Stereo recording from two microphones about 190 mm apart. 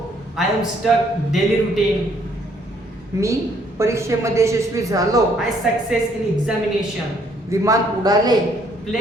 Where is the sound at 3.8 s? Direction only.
15° right (ahead or behind).